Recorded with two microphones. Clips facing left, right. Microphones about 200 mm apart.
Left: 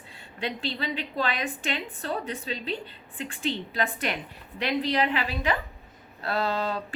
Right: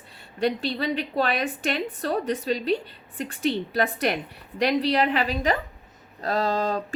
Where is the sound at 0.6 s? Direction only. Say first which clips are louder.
Right 5 dB; 50° right (ahead or behind).